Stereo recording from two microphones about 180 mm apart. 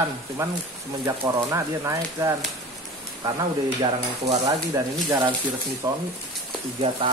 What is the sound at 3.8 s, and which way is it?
Speech, 25° right (ahead or behind).